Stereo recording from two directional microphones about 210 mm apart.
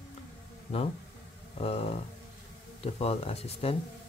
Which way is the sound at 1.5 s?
30° left (ahead or behind).